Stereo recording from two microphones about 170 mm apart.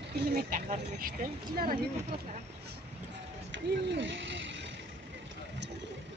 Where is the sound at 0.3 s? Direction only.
50° right (ahead or behind).